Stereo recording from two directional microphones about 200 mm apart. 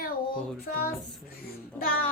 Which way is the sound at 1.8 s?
45° left (ahead or behind).